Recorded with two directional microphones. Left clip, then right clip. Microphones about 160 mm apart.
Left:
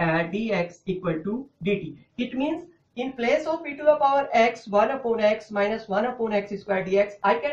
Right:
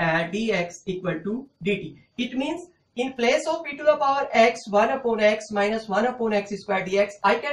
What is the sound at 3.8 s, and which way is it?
Speech, 15° left (ahead or behind).